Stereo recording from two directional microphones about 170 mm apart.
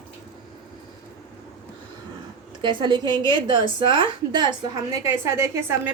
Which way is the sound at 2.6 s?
30° right (ahead or behind).